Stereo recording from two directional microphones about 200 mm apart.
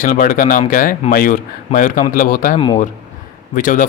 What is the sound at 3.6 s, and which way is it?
Speech, 40° left (ahead or behind).